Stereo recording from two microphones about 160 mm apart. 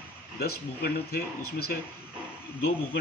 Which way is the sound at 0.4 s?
75° left (ahead or behind).